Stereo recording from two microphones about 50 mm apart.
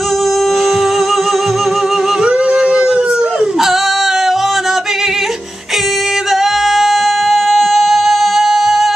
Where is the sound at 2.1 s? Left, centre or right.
Right.